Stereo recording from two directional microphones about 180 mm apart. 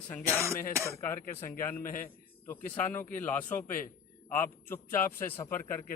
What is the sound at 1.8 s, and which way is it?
Speech, 50° left (ahead or behind).